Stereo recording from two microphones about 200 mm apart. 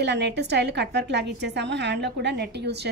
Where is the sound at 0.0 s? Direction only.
55° right (ahead or behind).